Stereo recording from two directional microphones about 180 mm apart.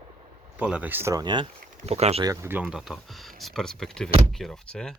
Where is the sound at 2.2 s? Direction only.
15° right (ahead or behind); by 4.9 s 5° left (ahead or behind).